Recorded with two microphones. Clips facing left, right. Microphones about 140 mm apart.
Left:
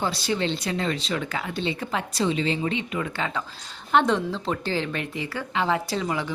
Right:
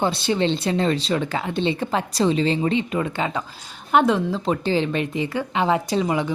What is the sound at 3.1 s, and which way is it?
A woman's voice, 20° right (ahead or behind).